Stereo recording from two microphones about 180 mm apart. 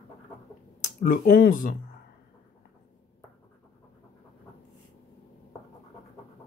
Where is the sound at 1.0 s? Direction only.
55° left (ahead or behind).